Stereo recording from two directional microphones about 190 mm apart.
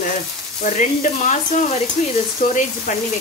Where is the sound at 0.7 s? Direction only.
40° left (ahead or behind).